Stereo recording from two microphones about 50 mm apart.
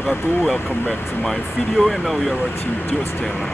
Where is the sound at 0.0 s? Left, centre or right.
Left.